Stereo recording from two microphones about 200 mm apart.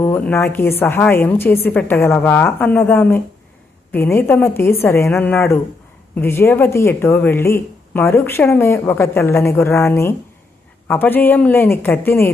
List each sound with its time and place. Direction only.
0.0 s speech: 10° left (ahead or behind)